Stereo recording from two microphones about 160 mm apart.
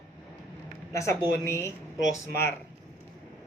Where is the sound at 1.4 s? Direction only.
15° left (ahead or behind).